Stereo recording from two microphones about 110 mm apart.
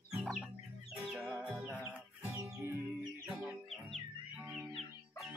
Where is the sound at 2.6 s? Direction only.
25° right (ahead or behind).